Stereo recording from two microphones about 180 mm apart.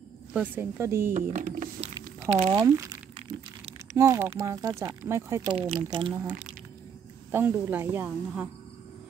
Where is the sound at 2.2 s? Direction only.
35° right (ahead or behind).